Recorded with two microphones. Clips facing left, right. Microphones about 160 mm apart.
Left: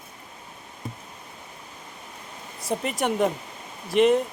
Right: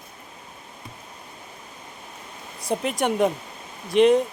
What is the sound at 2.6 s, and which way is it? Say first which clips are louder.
Speech: right 2 dB; centre (ahead or behind).